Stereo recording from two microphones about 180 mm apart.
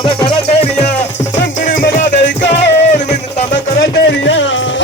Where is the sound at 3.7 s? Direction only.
85° left.